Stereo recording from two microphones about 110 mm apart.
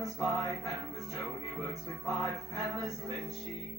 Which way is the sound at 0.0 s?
Centre (ahead or behind).